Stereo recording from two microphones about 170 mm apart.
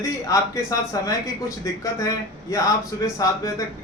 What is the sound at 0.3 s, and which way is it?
A man's voice, 20° left (ahead or behind).